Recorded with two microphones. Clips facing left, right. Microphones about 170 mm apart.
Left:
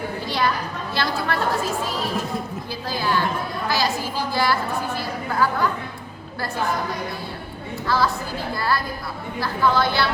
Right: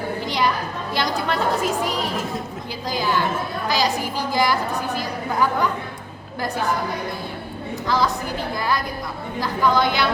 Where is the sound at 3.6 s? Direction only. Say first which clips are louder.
Right 2 dB; 15° right (ahead or behind).